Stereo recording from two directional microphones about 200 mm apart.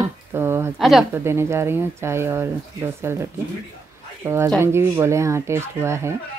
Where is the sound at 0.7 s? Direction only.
Centre (ahead or behind).